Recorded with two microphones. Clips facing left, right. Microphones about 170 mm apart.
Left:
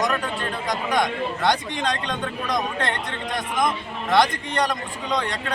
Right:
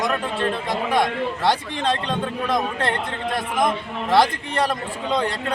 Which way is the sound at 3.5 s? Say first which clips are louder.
Right 1 dB; 30° right (ahead or behind).